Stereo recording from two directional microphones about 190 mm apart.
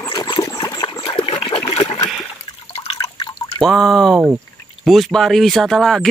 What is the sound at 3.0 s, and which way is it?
Drip, 25° left (ahead or behind).